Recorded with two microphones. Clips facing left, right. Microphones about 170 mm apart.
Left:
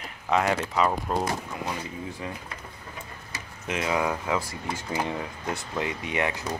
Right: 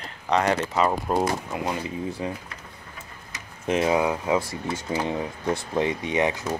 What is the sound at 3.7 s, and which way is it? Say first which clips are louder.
Speech: right 4 dB; 25° right (ahead or behind).